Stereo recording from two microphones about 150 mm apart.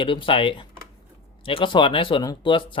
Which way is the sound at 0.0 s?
35° left (ahead or behind).